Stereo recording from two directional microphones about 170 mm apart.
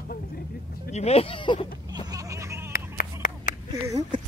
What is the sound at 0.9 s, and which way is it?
Speech, 35° left (ahead or behind).